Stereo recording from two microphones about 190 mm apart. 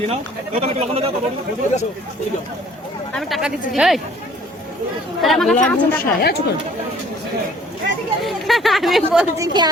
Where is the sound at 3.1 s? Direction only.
Centre (ahead or behind).